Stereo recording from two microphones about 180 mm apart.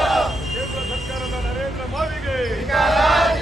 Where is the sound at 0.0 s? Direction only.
Centre (ahead or behind).